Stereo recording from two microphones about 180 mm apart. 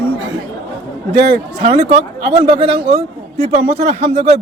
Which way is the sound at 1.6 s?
30° right (ahead or behind).